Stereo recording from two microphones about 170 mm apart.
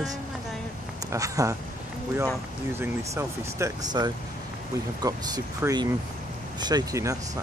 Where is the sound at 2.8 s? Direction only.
15° right (ahead or behind).